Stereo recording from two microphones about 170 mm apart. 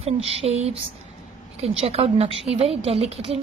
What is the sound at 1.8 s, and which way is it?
Speech, 35° right (ahead or behind).